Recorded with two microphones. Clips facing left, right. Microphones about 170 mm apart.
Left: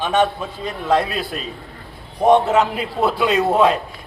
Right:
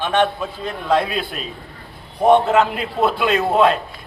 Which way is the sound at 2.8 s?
5° left (ahead or behind).